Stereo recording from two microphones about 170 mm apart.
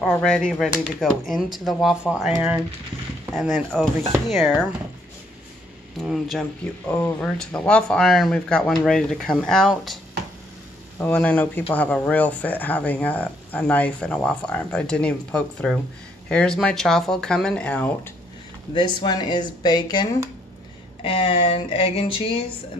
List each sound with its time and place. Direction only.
0.0 s speech: 5° left (ahead or behind)
3.3 s speech: centre (ahead or behind)
5.9 s speech: centre (ahead or behind)
11.0 s speech: 10° left (ahead or behind)
18.7 s speech: 30° left (ahead or behind)